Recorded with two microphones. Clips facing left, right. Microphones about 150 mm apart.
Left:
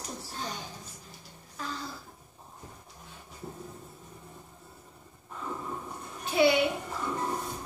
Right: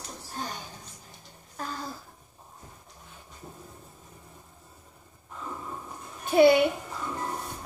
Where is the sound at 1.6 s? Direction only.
45° right (ahead or behind).